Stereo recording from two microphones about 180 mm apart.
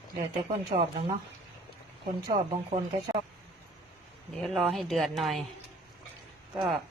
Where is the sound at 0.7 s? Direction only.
35° right (ahead or behind).